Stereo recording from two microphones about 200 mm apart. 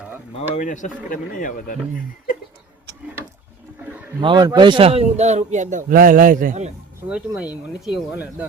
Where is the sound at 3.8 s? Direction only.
5° right (ahead or behind).